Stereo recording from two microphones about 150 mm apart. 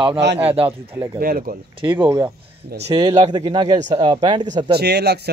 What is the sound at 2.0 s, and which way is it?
Speech, 20° right (ahead or behind).